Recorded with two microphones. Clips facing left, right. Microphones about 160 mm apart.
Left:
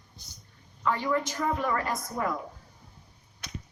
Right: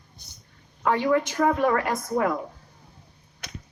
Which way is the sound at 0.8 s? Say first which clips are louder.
Right 6 dB; 60° right (ahead or behind).